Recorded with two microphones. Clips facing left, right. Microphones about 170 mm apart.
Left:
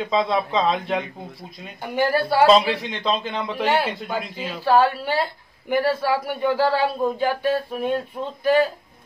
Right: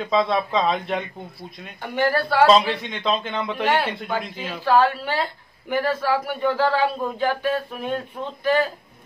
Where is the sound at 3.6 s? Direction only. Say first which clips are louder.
Left 1 dB; 35° left (ahead or behind).